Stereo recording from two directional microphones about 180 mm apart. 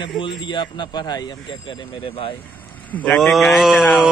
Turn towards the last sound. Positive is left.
turn(degrees=0)  # may be behind; listen again after turning